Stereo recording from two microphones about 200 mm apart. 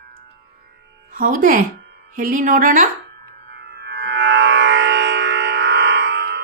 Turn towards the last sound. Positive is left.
turn(degrees=-60)  # may be behind; listen again after turning